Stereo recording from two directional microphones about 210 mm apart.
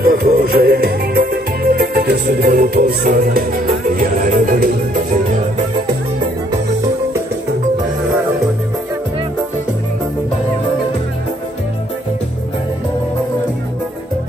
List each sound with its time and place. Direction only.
0.0 s music: 45° right (ahead or behind)